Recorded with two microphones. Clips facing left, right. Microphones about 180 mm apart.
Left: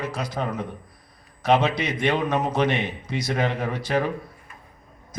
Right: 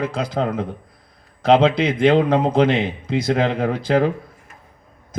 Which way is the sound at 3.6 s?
60° right (ahead or behind).